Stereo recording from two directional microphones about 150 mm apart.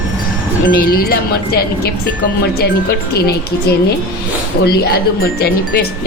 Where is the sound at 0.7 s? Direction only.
85° left.